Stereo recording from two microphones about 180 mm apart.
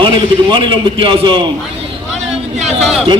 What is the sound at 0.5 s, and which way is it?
Speech, 30° right (ahead or behind).